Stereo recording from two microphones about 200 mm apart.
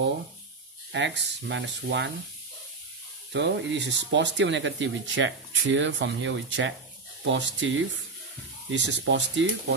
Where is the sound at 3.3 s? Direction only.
60° right (ahead or behind).